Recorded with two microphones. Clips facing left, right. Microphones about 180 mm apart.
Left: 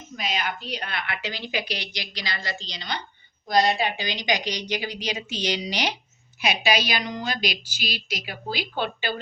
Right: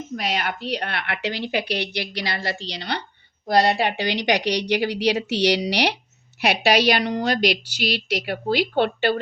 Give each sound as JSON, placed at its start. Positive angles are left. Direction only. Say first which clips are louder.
{"t": 0.2, "sound": "a woman's voice", "louder": "right 2 dB", "side_deg": -65}